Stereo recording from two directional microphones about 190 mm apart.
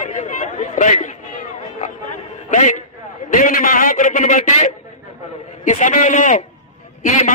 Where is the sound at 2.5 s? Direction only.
40° left (ahead or behind).